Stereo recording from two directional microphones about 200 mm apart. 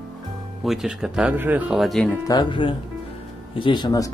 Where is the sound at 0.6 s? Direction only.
5° right (ahead or behind).